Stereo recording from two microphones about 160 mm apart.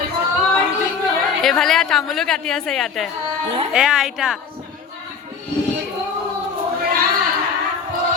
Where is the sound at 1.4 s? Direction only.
5° left (ahead or behind).